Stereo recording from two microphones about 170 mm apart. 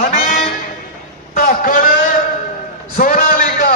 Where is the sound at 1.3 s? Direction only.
55° left (ahead or behind).